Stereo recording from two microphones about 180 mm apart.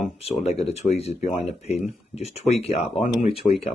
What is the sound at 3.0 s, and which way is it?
Speech, centre (ahead or behind).